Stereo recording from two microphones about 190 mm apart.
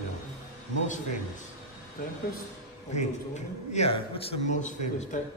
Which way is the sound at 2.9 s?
40° left (ahead or behind).